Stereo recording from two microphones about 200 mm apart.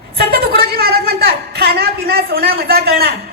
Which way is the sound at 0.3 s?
50° right (ahead or behind).